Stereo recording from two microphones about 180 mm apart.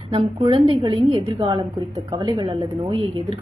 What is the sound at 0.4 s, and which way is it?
Speech, 30° right (ahead or behind).